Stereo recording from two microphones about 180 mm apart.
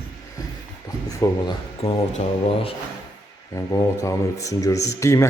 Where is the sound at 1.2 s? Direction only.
20° left (ahead or behind).